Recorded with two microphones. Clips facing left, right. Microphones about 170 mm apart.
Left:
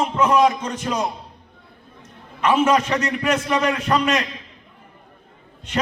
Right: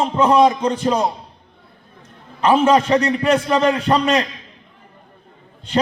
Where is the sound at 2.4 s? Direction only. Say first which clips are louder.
Right 3 dB; 30° right (ahead or behind).